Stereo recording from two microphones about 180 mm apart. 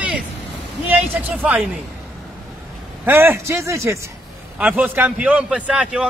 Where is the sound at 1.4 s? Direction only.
Centre (ahead or behind).